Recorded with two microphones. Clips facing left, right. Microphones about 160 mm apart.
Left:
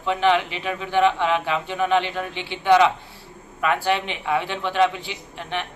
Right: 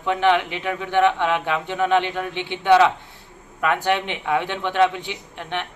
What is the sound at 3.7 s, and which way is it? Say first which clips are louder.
A man's voice: right 1 dB; 20° right (ahead or behind).